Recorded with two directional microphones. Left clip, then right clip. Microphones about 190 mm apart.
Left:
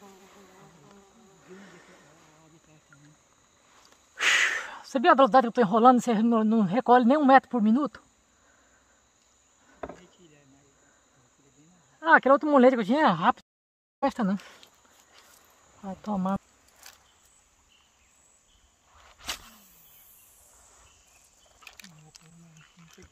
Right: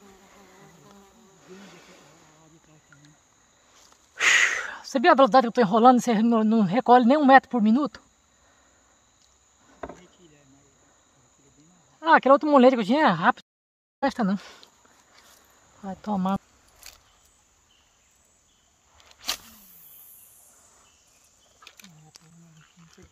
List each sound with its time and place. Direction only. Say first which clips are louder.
1.5 s a sound: right 2 dB; 10° right (ahead or behind)
4.1 s speech: right 3 dB; 5° right (ahead or behind)
9.8 s insect: right 1 dB; centre (ahead or behind)
12.0 s speech: right 2 dB; 5° right (ahead or behind)
15.8 s speech: right 3 dB; 10° right (ahead or behind)
19.2 s a sound: right 5 dB; 35° right (ahead or behind)
21.6 s wild animals: left 1 dB; 15° left (ahead or behind)